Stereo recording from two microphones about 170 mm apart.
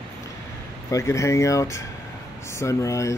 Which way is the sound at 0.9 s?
15° left (ahead or behind).